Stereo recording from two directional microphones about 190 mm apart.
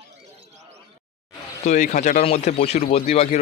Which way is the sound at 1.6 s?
40° left (ahead or behind).